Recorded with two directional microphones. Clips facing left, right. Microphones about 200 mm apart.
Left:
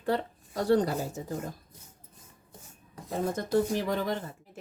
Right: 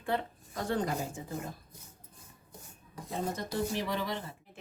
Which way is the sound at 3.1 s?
50° left (ahead or behind).